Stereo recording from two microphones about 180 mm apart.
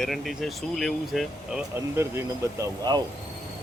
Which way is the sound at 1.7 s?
15° right (ahead or behind).